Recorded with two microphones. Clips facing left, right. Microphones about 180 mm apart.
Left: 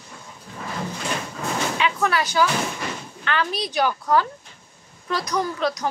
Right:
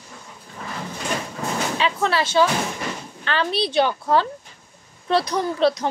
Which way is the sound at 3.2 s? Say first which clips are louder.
Right 2 dB; 30° right (ahead or behind).